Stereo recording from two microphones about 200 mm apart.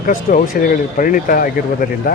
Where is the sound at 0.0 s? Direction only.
40° left (ahead or behind).